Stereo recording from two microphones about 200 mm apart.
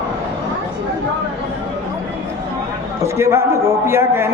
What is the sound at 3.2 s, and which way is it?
A man's voice, 15° right (ahead or behind).